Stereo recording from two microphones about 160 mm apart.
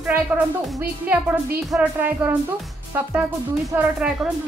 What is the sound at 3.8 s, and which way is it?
Speech, 5° right (ahead or behind).